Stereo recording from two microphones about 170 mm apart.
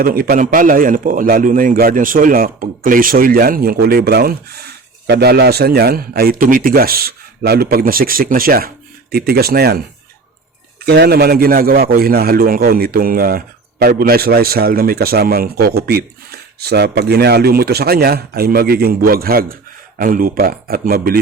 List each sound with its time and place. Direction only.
0.0 s a man's voice: 55° right (ahead or behind)
10.8 s a man's voice: 70° right (ahead or behind)